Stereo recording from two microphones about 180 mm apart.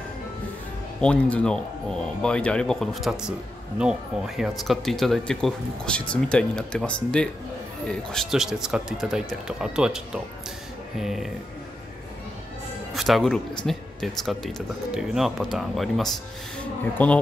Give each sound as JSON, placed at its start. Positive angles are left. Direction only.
{"t": 1.0, "sound": "speech", "side_deg": 5}
{"t": 12.9, "sound": "speech", "side_deg": 0}